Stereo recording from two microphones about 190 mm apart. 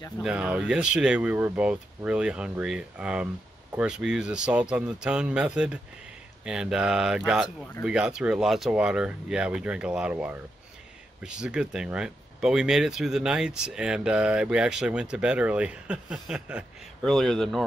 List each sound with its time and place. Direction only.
0.2 s speech: 5° right (ahead or behind)